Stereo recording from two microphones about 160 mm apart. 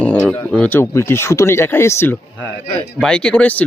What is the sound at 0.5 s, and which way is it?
Speech, 10° left (ahead or behind).